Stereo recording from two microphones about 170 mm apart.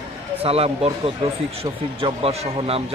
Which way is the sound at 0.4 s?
35° right (ahead or behind).